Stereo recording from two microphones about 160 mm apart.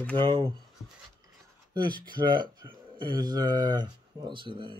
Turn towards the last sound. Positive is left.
turn(degrees=-30)  # may be behind; listen again after turning